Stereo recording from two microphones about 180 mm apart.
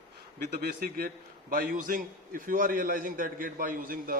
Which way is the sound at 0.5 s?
55° right (ahead or behind).